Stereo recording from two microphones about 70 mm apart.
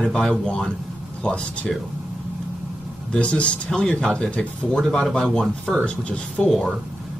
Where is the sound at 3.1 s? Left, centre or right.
Centre.